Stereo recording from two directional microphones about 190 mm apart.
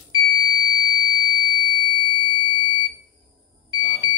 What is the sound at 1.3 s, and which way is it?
Smoke detector, 25° right (ahead or behind).